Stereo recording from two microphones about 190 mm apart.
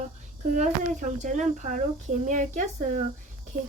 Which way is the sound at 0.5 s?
40° right (ahead or behind).